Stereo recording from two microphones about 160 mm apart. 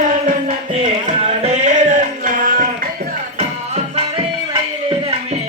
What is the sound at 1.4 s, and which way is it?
Music, 45° right (ahead or behind).